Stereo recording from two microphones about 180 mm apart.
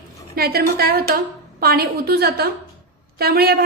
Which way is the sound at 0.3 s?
60° right (ahead or behind).